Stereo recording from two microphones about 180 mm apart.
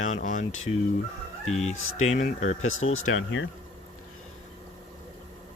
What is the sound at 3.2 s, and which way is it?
Speech, 90° left.